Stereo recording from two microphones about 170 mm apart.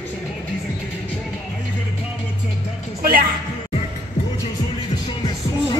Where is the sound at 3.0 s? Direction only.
60° right (ahead or behind).